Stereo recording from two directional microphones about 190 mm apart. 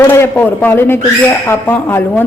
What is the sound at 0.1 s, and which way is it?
Speech, 10° left (ahead or behind).